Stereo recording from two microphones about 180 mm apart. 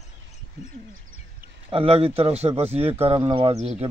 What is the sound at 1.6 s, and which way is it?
Speech, 30° right (ahead or behind).